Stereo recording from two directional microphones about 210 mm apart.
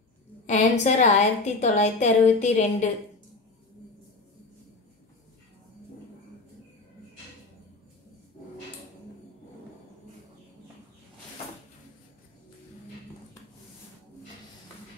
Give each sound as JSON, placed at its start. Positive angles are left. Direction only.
{"t": 0.5, "sound": "a woman's voice", "side_deg": 35}